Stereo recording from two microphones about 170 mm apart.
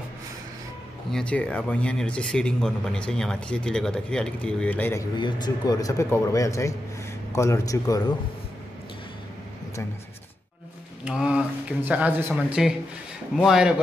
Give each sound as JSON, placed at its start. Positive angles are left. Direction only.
{"t": 1.1, "sound": "speech", "side_deg": 5}
{"t": 5.1, "sound": "a man's voice", "side_deg": 25}
{"t": 11.1, "sound": "speech", "side_deg": -5}